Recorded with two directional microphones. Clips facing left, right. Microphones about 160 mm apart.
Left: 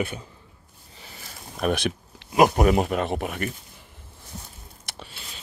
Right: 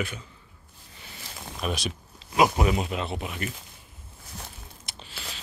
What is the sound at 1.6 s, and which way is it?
Speech, 55° left (ahead or behind).